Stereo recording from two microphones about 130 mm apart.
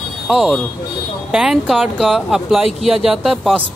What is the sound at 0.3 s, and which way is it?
A woman's voice, centre (ahead or behind).